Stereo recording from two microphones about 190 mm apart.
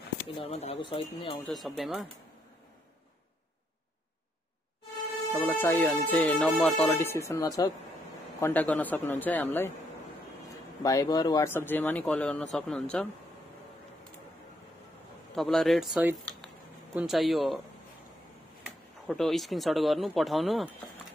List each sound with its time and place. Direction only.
0.4 s speech: 30° left (ahead or behind)
1.4 s speech: centre (ahead or behind)
5.3 s speech: 10° left (ahead or behind)
10.8 s speech: 20° left (ahead or behind)
15.3 s speech: centre (ahead or behind)
19.0 s speech: centre (ahead or behind)